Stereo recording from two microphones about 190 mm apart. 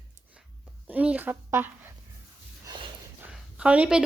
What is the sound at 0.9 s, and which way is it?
A woman's voice, 10° right (ahead or behind).